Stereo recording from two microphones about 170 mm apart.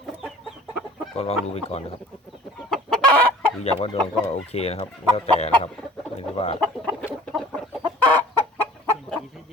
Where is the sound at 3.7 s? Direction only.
35° left (ahead or behind).